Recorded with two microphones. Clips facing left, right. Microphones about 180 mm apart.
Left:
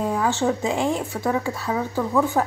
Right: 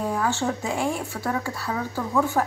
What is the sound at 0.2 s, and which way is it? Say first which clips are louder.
Speech: left 4 dB; 20° left (ahead or behind).